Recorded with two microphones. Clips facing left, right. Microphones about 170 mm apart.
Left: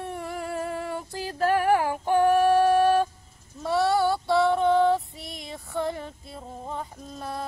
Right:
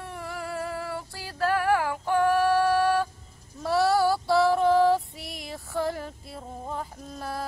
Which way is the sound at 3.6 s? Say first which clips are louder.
Even; centre (ahead or behind).